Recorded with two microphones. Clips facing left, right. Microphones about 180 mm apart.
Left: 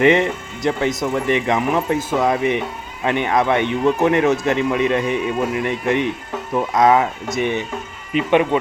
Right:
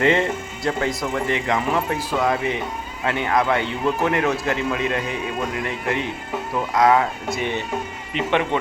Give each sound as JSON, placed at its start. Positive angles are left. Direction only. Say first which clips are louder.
{"t": 0.0, "sound": "speech", "louder": "left 4 dB", "side_deg": 20}